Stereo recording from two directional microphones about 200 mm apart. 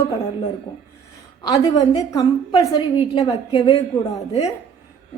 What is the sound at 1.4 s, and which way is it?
A woman's voice, 20° left (ahead or behind).